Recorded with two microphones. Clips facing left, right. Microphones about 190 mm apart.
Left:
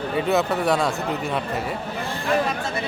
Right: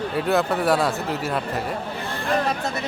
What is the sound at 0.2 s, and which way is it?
Speech, centre (ahead or behind).